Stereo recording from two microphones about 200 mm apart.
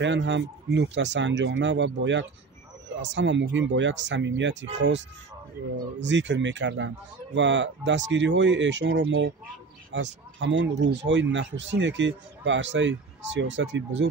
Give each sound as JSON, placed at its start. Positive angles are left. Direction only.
{"t": 0.0, "sound": "speech", "side_deg": -60}